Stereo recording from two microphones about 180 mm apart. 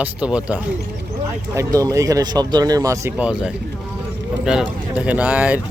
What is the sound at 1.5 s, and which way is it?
Speech, 20° right (ahead or behind).